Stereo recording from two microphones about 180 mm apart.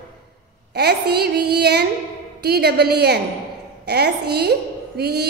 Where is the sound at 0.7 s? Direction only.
65° right (ahead or behind).